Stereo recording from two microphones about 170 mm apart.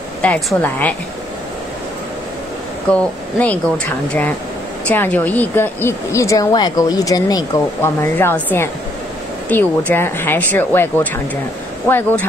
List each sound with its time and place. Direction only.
0.2 s speech: 5° left (ahead or behind)
2.9 s speech: 5° left (ahead or behind)